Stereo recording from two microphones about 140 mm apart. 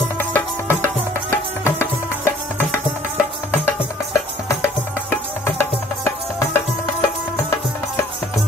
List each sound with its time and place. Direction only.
0.2 s music: 15° left (ahead or behind)